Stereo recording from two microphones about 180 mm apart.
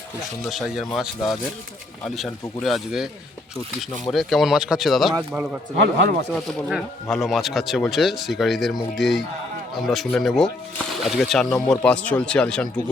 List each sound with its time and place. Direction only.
0.4 s speech: centre (ahead or behind)
4.1 s speech: centre (ahead or behind)
5.7 s speech: 65° right (ahead or behind)
6.6 s speech: centre (ahead or behind)